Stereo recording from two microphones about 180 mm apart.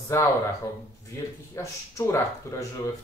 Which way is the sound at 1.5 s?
15° left (ahead or behind).